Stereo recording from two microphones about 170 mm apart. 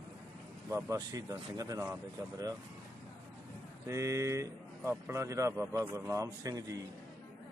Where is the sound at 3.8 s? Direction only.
15° right (ahead or behind).